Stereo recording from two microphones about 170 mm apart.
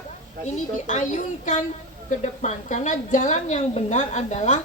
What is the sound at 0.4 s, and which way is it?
A woman's voice, 45° left (ahead or behind).